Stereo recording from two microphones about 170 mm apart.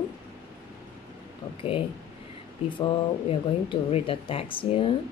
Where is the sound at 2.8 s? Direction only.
30° left (ahead or behind).